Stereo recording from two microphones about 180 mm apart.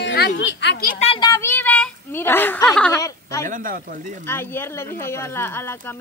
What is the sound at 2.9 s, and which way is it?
Speech, 15° left (ahead or behind).